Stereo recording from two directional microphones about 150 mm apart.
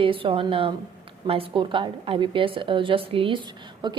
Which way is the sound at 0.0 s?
35° right (ahead or behind).